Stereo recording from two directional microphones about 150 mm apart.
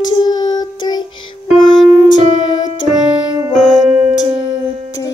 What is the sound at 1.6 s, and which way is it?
Music, 30° left (ahead or behind).